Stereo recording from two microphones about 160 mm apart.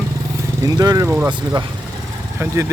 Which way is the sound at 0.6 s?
25° right (ahead or behind).